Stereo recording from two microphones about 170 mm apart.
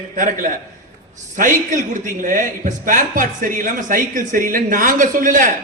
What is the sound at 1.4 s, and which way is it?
Speech, 50° right (ahead or behind).